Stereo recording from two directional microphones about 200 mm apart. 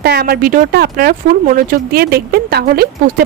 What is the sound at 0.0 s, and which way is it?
Speech, 50° right (ahead or behind).